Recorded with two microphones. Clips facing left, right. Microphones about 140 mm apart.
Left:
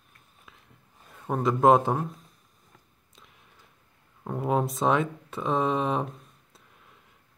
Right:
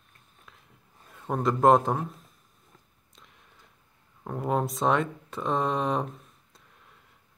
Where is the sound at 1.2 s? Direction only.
5° left (ahead or behind).